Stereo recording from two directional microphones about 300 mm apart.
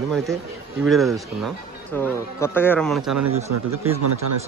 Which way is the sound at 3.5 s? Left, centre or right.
Right.